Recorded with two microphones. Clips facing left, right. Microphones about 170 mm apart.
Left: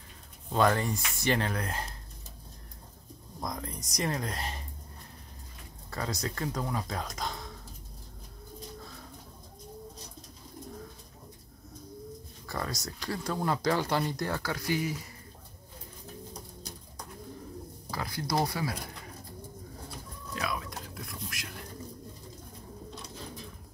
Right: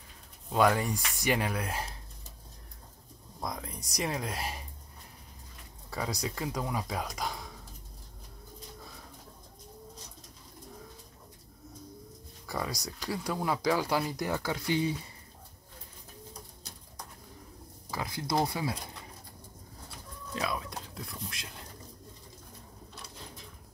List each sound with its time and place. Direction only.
0.5 s speech: 10° right (ahead or behind)
3.3 s speech: 5° right (ahead or behind)
5.9 s speech: 10° right (ahead or behind)
12.4 s speech: 10° right (ahead or behind)
17.9 s speech: 20° right (ahead or behind)
20.3 s a sound: 30° right (ahead or behind)